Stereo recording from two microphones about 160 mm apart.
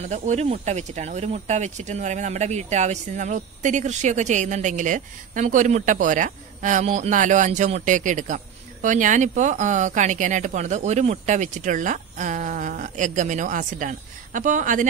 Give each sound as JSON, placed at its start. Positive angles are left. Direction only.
{"t": 0.0, "sound": "speech", "side_deg": -45}